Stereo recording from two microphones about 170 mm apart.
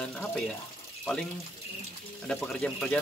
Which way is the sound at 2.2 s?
5° left (ahead or behind).